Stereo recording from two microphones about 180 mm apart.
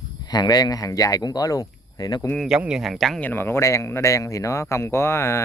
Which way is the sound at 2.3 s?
Centre (ahead or behind).